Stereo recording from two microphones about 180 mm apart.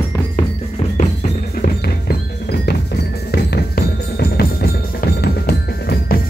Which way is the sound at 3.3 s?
60° left (ahead or behind).